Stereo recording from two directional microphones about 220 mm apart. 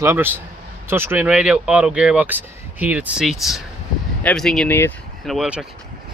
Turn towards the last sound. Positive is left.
turn(degrees=0)  # may be behind; listen again after turning